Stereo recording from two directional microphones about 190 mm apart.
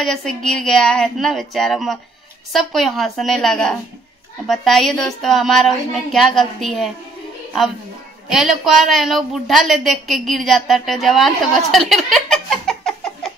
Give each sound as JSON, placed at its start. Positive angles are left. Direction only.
{"t": 0.0, "sound": "a woman's voice", "side_deg": 0}
{"t": 8.3, "sound": "a woman's voice", "side_deg": 0}
{"t": 11.9, "sound": "a sound", "side_deg": 0}